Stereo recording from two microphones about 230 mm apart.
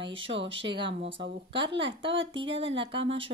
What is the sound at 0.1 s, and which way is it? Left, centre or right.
Speech, right.